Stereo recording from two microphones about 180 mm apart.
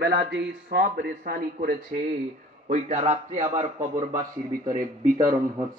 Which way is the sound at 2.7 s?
40° right (ahead or behind).